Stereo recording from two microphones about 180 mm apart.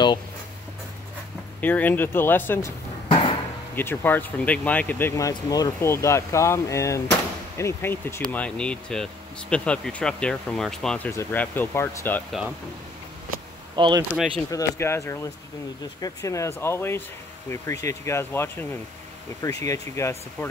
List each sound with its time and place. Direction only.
1.6 s speech: 10° left (ahead or behind)
3.1 s a sound: 30° left (ahead or behind)
3.7 s speech: 10° left (ahead or behind)
13.7 s speech: 25° right (ahead or behind)
14.1 s speech: 5° right (ahead or behind)
14.5 s speech: 15° left (ahead or behind)